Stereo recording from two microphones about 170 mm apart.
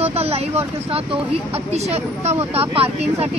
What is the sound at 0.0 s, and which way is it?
Speech, 35° right (ahead or behind).